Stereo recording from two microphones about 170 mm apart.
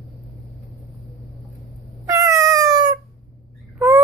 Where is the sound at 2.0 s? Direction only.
20° right (ahead or behind).